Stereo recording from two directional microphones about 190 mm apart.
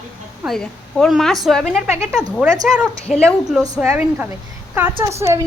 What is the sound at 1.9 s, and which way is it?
Speech, 10° right (ahead or behind).